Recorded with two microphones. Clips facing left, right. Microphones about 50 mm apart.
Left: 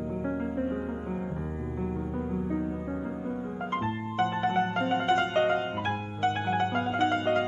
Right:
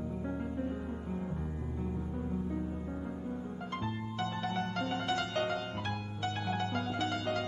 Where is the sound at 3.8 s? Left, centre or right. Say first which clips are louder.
Left 8 dB; left.